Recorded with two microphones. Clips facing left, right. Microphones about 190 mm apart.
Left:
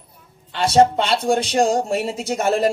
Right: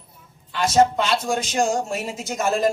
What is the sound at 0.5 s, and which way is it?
Speech, 30° left (ahead or behind).